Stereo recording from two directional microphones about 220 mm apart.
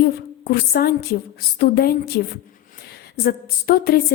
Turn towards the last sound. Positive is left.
turn(degrees=45)  # may be behind; listen again after turning